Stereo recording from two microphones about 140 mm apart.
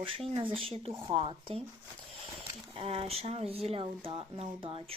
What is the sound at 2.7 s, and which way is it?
Speech, 45° right (ahead or behind).